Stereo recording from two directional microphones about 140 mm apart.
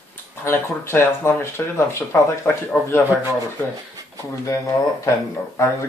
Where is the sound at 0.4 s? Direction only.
15° left (ahead or behind).